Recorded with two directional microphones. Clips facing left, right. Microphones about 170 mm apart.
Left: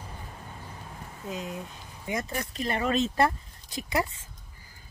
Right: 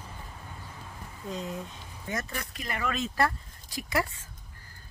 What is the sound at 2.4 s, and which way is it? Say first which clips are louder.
Speech: left 5 dB; 30° left (ahead or behind).